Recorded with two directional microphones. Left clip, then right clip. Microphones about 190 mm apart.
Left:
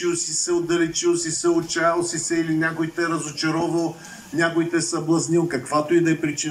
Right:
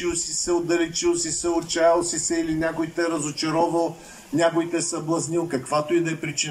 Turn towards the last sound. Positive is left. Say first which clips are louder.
# left 4 dB
turn(degrees=-5)  # may be behind; listen again after turning